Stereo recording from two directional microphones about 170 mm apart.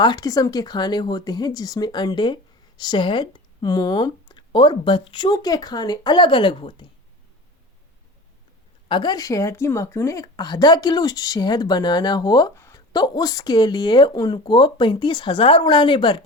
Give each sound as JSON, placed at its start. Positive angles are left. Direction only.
{"t": 0.0, "sound": "a woman's voice", "side_deg": 25}
{"t": 8.9, "sound": "a woman's voice", "side_deg": 25}